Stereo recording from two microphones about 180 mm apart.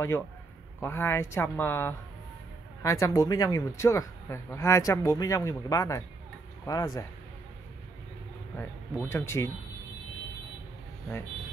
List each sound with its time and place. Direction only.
0.7 s speech: 10° left (ahead or behind)
8.5 s speech: 10° left (ahead or behind)